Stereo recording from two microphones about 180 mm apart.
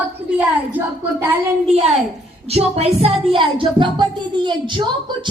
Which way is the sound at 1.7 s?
35° right (ahead or behind).